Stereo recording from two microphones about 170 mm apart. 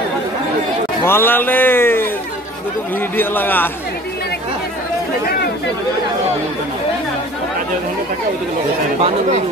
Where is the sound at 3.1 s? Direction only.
10° left (ahead or behind).